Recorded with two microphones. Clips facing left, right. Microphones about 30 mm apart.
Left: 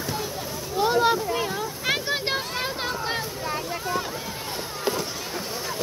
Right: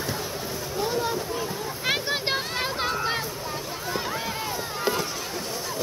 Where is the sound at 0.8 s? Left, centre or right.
Left.